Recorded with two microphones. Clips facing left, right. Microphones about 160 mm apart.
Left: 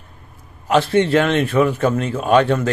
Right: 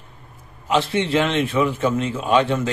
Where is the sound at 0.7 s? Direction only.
50° left (ahead or behind).